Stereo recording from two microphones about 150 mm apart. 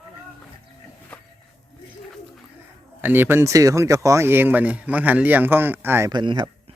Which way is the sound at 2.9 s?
15° right (ahead or behind).